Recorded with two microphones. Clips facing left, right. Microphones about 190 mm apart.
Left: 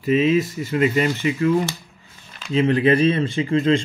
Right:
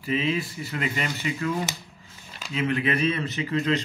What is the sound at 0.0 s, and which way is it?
Speech, 20° left (ahead or behind).